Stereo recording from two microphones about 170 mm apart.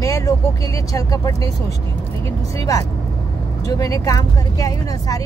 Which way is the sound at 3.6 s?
20° left (ahead or behind).